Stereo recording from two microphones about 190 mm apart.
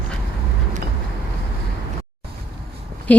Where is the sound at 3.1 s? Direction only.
5° left (ahead or behind).